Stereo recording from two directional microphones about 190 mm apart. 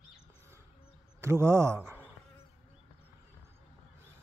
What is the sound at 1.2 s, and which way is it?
Speech, 15° right (ahead or behind).